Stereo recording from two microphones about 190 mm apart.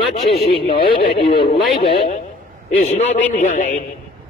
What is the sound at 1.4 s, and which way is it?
Speech, 30° left (ahead or behind).